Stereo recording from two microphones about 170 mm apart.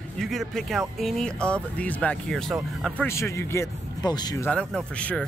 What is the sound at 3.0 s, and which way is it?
Speech, 15° left (ahead or behind).